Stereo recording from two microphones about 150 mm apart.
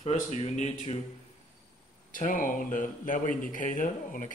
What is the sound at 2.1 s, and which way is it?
Speech, 65° left (ahead or behind).